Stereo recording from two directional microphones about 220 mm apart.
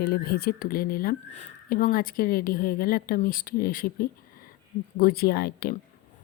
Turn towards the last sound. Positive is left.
turn(degrees=45)  # may be behind; listen again after turning